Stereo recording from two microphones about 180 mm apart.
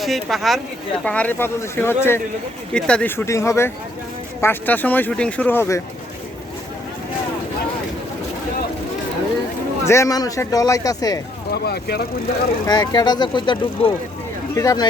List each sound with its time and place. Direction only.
0.0 s speech: centre (ahead or behind)
9.8 s speech: 15° left (ahead or behind)
11.5 s speech: 60° left (ahead or behind)
12.6 s speech: 20° left (ahead or behind)